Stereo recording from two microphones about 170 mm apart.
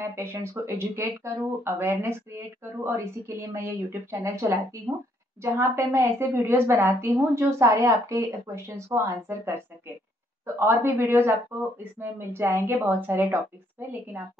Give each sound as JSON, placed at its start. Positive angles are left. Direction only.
{"t": 0.1, "sound": "speech", "side_deg": -15}